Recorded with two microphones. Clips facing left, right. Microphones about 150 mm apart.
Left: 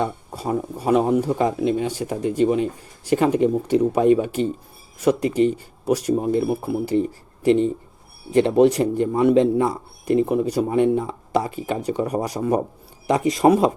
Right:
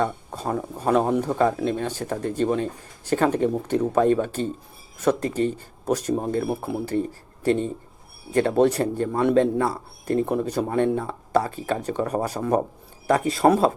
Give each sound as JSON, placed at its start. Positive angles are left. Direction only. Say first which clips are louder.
{"t": 0.0, "sound": "a man's voice", "louder": "even", "side_deg": 10}